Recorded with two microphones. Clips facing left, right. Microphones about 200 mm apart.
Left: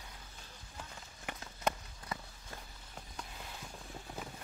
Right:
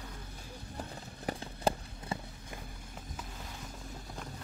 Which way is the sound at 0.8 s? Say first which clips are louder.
Right 6 dB; 35° right (ahead or behind).